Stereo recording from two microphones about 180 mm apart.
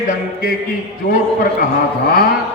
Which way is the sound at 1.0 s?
50° left (ahead or behind).